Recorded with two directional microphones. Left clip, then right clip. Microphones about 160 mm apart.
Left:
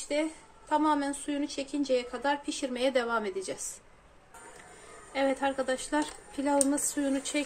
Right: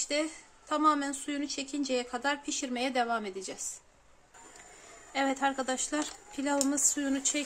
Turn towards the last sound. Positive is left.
turn(degrees=-20)  # may be behind; listen again after turning